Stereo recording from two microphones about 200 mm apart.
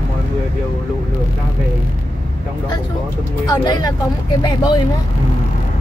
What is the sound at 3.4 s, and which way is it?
Speech, 20° left (ahead or behind).